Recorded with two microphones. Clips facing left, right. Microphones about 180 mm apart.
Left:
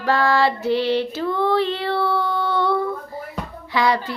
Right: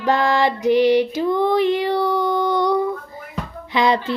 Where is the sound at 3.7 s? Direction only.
20° right (ahead or behind).